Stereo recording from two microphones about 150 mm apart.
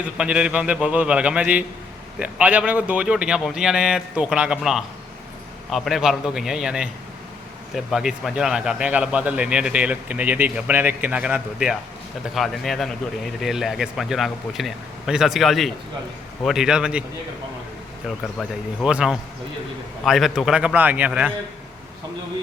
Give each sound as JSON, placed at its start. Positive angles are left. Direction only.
{"t": 0.0, "sound": "a man's voice", "side_deg": -5}
{"t": 18.3, "sound": "a man's voice", "side_deg": -5}